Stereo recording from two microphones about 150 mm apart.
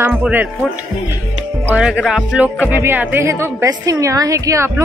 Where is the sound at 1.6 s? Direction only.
5° right (ahead or behind).